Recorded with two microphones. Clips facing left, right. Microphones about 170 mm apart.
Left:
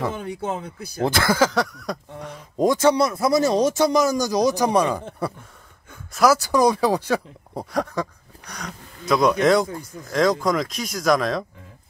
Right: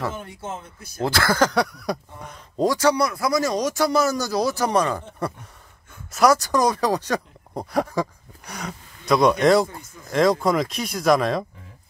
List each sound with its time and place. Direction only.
0.5 s speech: 65° left (ahead or behind)
1.0 s speech: 20° left (ahead or behind)
1.4 s speech: centre (ahead or behind)
2.5 s speech: 20° left (ahead or behind)
7.7 s speech: 5° right (ahead or behind)